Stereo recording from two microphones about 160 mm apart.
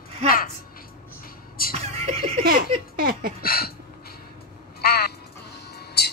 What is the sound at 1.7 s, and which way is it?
Neigh, 40° right (ahead or behind).